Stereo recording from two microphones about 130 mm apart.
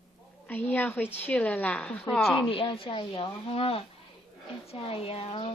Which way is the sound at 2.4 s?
45° left (ahead or behind).